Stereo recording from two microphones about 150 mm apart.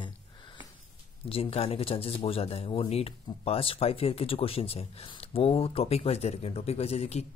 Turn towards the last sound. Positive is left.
turn(degrees=45)  # may be behind; listen again after turning